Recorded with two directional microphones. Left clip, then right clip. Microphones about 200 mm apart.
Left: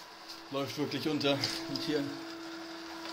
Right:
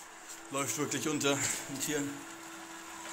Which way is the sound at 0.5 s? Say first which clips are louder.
Right 1 dB; 5° left (ahead or behind).